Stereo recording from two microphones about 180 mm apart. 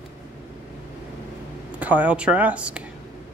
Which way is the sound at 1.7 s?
10° right (ahead or behind).